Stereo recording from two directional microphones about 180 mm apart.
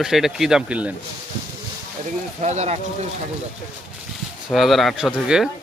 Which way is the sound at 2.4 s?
40° right (ahead or behind).